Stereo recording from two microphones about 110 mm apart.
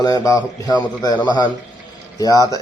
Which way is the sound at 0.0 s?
35° left (ahead or behind).